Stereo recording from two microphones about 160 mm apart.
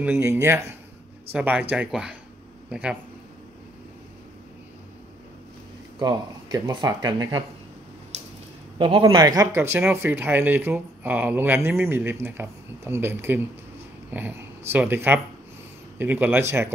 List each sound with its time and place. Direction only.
0.0 s speech: 15° right (ahead or behind)
5.9 s speech: 25° right (ahead or behind)
8.7 s speech: 30° right (ahead or behind)